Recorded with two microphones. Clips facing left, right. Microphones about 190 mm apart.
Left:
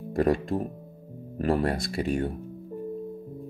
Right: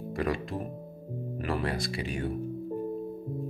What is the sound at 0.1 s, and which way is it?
Speech, 45° left (ahead or behind).